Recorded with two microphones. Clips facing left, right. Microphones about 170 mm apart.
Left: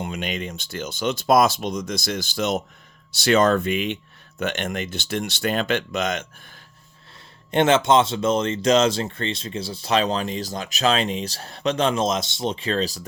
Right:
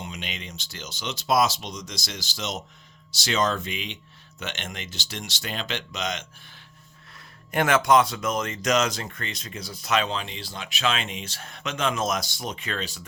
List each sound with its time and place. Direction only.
0.0 s speech: 55° left (ahead or behind)
7.5 s speech: 25° left (ahead or behind)